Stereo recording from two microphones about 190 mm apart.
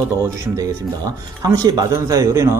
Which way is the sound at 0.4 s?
15° right (ahead or behind).